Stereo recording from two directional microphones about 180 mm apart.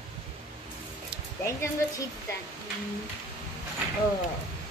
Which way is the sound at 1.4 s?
15° left (ahead or behind).